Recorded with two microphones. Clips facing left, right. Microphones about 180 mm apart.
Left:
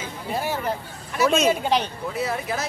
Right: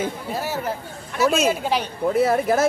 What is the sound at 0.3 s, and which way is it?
Speech, 5° right (ahead or behind).